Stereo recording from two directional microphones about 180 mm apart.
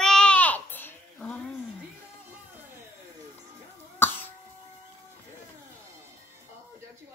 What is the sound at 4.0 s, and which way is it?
Cough, 10° left (ahead or behind).